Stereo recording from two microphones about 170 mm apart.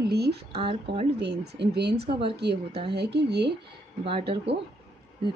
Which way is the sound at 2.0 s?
30° right (ahead or behind).